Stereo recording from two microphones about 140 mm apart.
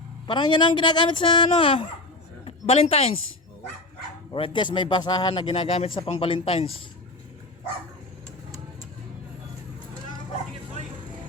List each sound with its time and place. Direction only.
0.3 s a man's voice: 30° left (ahead or behind)
4.3 s a man's voice: 35° left (ahead or behind)